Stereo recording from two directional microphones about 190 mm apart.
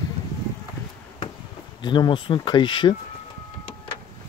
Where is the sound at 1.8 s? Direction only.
25° left (ahead or behind).